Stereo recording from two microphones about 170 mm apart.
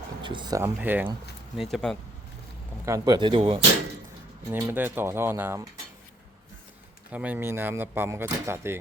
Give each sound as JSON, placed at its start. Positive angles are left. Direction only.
{"t": 0.2, "sound": "speech", "side_deg": -30}
{"t": 0.6, "sound": "speech", "side_deg": -10}
{"t": 1.5, "sound": "speech", "side_deg": 0}
{"t": 2.8, "sound": "speech", "side_deg": -20}
{"t": 4.4, "sound": "speech", "side_deg": -15}
{"t": 7.1, "sound": "speech", "side_deg": -10}